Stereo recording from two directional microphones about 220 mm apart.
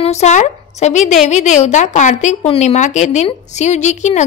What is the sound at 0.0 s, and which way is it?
A woman's voice, 30° left (ahead or behind).